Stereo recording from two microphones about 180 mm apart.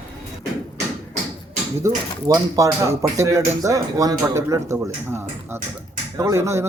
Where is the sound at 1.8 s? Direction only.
15° right (ahead or behind).